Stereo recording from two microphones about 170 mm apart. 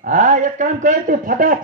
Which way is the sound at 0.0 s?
45° right (ahead or behind).